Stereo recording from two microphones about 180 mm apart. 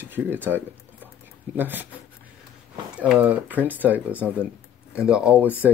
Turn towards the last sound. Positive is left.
turn(degrees=-5)  # may be behind; listen again after turning